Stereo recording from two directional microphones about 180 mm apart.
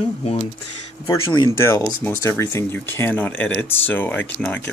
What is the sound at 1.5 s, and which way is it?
Speech, 15° left (ahead or behind).